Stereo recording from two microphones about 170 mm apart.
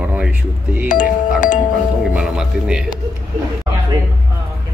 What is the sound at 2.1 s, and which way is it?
Music, 5° right (ahead or behind).